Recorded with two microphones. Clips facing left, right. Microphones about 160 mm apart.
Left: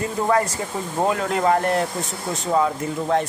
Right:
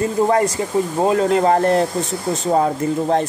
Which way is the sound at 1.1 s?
30° right (ahead or behind).